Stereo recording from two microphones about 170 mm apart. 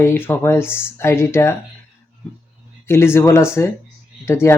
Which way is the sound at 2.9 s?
15° left (ahead or behind).